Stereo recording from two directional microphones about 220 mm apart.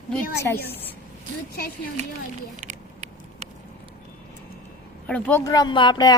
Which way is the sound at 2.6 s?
35° right (ahead or behind).